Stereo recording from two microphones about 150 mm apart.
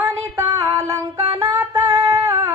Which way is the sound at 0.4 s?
20° right (ahead or behind).